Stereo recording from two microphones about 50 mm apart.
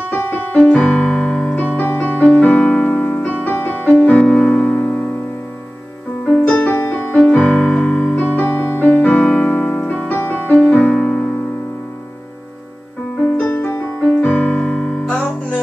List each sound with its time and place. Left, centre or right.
0.1 s keyboard: left; by 1.4 s centre
1.6 s music: left
4.2 s keyboard: centre
4.7 s music: left
6.4 s music: left
7.2 s piano: left
8.2 s music: left
8.8 s keyboard: left
9.6 s piano: left
10.0 s music: left
10.5 s music: left
10.9 s keyboard: centre
13.2 s music: left